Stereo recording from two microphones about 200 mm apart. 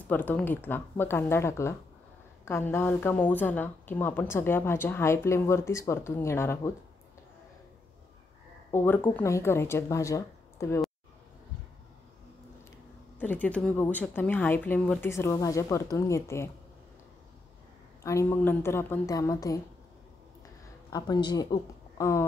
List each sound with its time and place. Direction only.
0.1 s speech: 10° left (ahead or behind)
8.7 s speech: 10° left (ahead or behind)
13.2 s speech: 10° left (ahead or behind)
18.0 s speech: 15° left (ahead or behind)
20.9 s speech: 20° left (ahead or behind)